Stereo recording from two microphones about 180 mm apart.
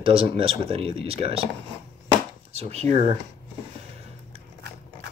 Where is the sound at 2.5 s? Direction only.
35° right (ahead or behind).